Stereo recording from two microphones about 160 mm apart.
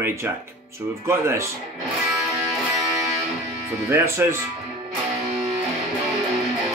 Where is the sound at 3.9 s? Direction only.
15° right (ahead or behind).